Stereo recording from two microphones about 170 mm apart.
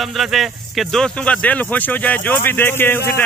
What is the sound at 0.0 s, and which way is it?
Speech, centre (ahead or behind).